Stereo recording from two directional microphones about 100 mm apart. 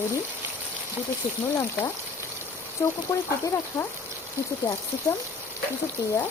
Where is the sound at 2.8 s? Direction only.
30° left (ahead or behind).